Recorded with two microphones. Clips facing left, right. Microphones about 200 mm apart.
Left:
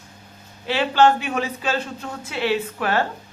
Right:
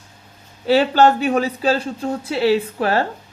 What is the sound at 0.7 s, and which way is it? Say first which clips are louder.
Speech: right 4 dB; 40° right (ahead or behind).